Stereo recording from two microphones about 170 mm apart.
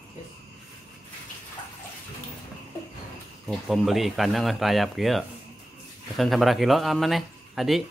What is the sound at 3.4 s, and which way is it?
Speech, centre (ahead or behind).